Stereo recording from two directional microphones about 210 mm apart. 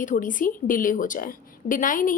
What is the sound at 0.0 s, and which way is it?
A woman's voice, 40° left (ahead or behind).